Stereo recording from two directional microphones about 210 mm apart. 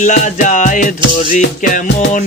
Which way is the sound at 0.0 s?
35° left (ahead or behind).